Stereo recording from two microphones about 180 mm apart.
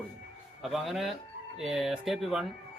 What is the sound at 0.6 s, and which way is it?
Speech, centre (ahead or behind).